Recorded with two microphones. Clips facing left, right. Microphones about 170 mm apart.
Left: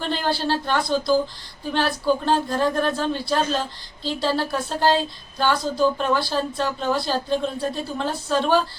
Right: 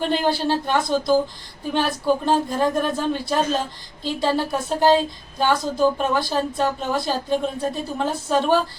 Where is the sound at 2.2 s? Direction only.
10° right (ahead or behind).